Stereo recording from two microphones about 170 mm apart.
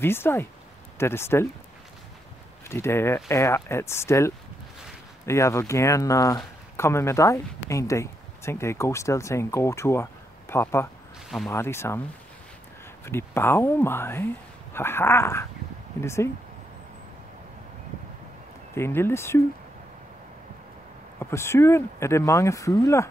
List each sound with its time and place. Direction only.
0.0 s speech: 15° left (ahead or behind)
2.7 s speech: 15° left (ahead or behind)
11.2 s speech: centre (ahead or behind)
11.5 s speech: 15° left (ahead or behind)
13.0 s speech: 15° left (ahead or behind)
18.8 s speech: 15° left (ahead or behind)
21.2 s speech: 15° left (ahead or behind)